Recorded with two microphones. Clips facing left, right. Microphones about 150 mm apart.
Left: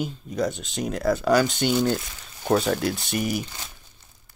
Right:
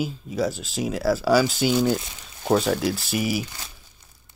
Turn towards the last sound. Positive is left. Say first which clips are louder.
# right 1 dB
turn(degrees=-5)  # may be behind; listen again after turning